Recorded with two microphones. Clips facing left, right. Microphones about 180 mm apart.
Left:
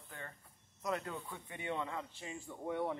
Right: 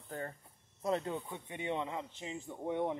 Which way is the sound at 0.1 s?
40° right (ahead or behind).